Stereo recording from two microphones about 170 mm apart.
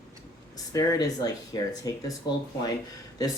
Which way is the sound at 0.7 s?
20° left (ahead or behind).